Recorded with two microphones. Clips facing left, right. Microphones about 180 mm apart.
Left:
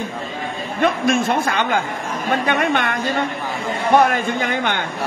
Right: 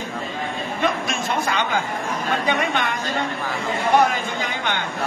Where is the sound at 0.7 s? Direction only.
55° left (ahead or behind).